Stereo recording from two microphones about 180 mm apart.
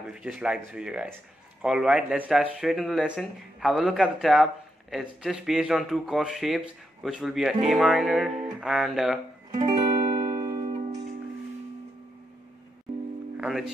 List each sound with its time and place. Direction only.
0.0 s speech: 5° right (ahead or behind)
9.6 s music: 20° right (ahead or behind)
13.4 s music: centre (ahead or behind)